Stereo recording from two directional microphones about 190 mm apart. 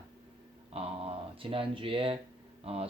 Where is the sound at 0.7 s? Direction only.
30° right (ahead or behind).